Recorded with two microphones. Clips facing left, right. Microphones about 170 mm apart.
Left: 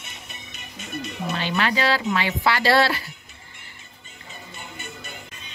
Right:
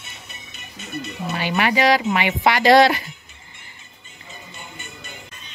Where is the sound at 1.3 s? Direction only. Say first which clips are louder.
Right 4 dB; 10° right (ahead or behind).